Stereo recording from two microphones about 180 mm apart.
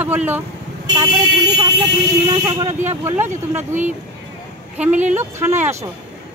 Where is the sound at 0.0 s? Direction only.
10° right (ahead or behind).